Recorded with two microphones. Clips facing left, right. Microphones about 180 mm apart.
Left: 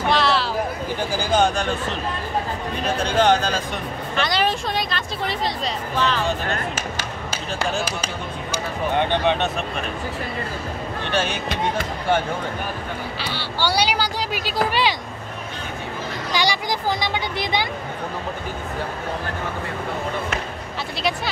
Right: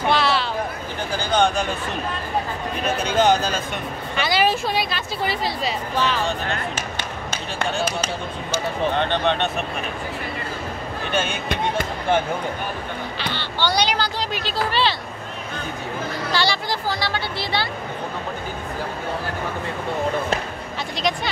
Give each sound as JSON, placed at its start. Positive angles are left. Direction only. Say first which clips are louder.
{"t": 0.0, "sound": "a sound", "louder": "even", "side_deg": 0}
{"t": 1.1, "sound": "speech", "louder": "even", "side_deg": 5}
{"t": 3.2, "sound": "speech", "louder": "even", "side_deg": -10}
{"t": 8.9, "sound": "speech", "louder": "left 5 dB", "side_deg": 10}
{"t": 11.1, "sound": "speech", "louder": "left 1 dB", "side_deg": 0}
{"t": 13.2, "sound": "speech", "louder": "right 1 dB", "side_deg": 10}
{"t": 16.3, "sound": "speech", "louder": "left 1 dB", "side_deg": 15}